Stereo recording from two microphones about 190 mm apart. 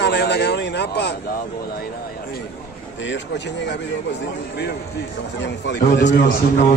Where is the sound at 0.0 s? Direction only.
60° left (ahead or behind).